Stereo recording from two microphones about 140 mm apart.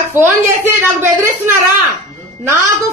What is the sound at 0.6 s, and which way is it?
Speech, 15° right (ahead or behind).